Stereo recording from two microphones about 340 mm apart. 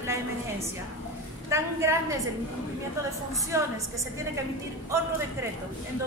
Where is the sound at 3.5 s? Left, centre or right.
Centre.